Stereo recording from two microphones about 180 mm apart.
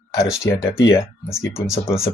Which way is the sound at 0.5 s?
20° left (ahead or behind).